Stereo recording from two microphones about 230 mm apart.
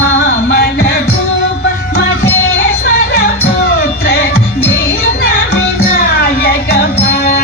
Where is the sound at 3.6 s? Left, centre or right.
Left.